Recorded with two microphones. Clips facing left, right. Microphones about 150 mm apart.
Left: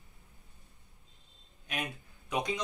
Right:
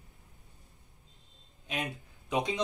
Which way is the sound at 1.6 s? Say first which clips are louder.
Right 2 dB; 20° right (ahead or behind).